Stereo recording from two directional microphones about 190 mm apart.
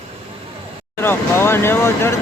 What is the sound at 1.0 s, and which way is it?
Speech, 10° left (ahead or behind).